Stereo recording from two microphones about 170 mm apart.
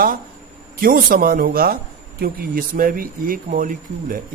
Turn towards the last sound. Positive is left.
turn(degrees=-50)  # may be behind; listen again after turning